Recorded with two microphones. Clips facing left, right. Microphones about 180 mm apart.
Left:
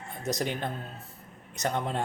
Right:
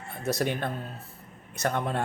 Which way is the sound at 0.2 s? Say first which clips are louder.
Right 3 dB; 20° left (ahead or behind).